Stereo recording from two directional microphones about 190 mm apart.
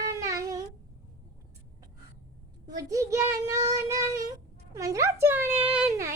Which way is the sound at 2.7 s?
15° right (ahead or behind).